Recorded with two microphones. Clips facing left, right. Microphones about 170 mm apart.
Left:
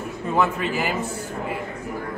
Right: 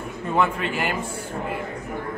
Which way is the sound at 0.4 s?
5° left (ahead or behind).